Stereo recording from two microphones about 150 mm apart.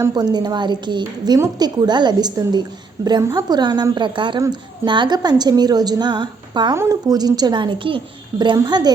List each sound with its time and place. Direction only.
0.0 s a woman's voice: 25° right (ahead or behind)